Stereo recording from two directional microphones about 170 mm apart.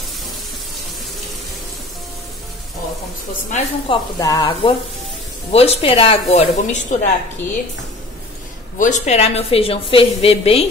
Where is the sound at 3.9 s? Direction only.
20° left (ahead or behind).